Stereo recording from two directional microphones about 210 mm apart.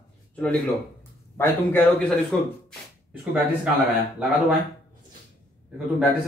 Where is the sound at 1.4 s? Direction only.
5° left (ahead or behind).